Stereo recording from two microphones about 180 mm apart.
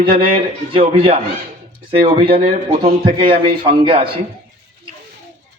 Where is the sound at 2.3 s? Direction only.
55° right (ahead or behind).